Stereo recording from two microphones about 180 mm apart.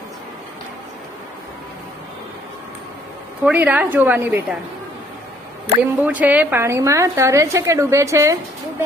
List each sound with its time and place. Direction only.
3.4 s a woman's voice: 5° right (ahead or behind)
6.0 s a woman's voice: 10° right (ahead or behind)